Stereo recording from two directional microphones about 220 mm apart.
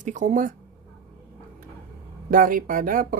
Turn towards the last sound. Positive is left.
turn(degrees=-40)  # may be behind; listen again after turning